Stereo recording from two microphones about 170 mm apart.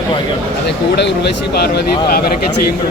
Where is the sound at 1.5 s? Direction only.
70° left (ahead or behind).